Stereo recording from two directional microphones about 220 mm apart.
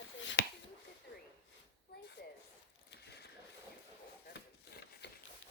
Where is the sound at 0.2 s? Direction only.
55° left (ahead or behind).